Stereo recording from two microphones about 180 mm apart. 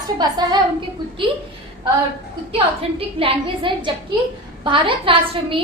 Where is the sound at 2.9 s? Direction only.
30° right (ahead or behind).